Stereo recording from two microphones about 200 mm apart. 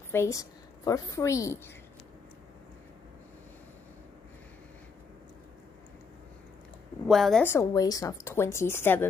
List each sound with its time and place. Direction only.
0.1 s a woman's voice: 15° left (ahead or behind)
7.1 s a woman's voice: centre (ahead or behind)
7.4 s a woman's voice: 15° left (ahead or behind)